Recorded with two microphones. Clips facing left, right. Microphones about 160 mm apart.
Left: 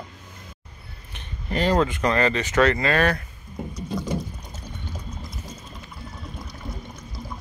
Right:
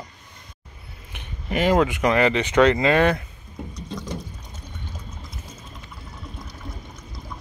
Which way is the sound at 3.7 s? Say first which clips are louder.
Left 5 dB; 5° left (ahead or behind).